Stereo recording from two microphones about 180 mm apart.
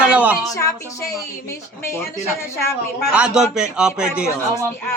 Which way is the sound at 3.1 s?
5° right (ahead or behind).